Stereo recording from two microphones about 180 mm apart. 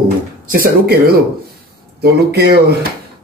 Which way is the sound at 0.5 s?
55° right (ahead or behind).